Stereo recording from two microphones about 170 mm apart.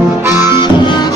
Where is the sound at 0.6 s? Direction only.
25° left (ahead or behind).